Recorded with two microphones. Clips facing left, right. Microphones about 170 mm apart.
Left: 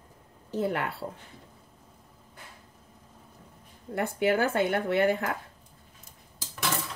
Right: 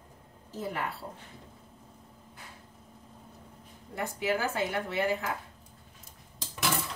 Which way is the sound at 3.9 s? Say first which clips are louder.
Left 5 dB; 60° left (ahead or behind).